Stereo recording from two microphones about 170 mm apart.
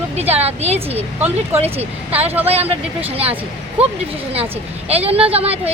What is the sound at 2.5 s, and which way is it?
Speech, 35° right (ahead or behind).